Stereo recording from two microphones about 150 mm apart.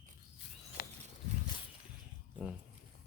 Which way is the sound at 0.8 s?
75° left (ahead or behind).